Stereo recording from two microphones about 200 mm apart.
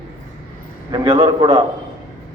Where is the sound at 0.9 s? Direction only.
20° right (ahead or behind).